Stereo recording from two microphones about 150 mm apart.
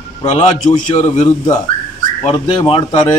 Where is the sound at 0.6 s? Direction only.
50° left (ahead or behind).